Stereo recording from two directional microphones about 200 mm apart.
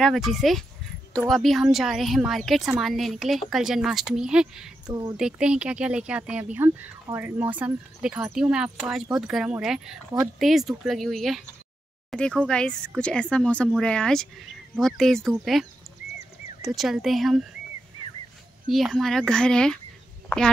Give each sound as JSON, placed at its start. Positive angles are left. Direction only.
{"t": 0.0, "sound": "speech", "side_deg": 0}
{"t": 4.8, "sound": "speech", "side_deg": -20}
{"t": 5.1, "sound": "speech", "side_deg": -5}
{"t": 16.6, "sound": "speech", "side_deg": 0}
{"t": 18.7, "sound": "speech", "side_deg": 0}